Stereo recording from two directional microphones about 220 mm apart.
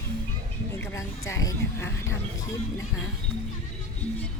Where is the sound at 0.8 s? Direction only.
10° left (ahead or behind).